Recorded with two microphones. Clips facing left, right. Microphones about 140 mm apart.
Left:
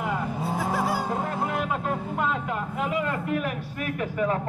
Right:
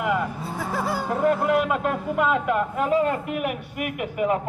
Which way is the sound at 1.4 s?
80° right.